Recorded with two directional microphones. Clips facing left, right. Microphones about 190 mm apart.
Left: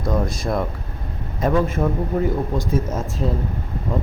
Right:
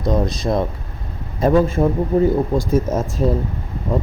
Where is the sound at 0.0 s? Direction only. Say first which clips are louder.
Right 3 dB; 20° right (ahead or behind).